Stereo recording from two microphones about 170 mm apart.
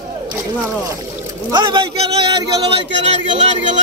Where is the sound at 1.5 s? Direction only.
30° right (ahead or behind).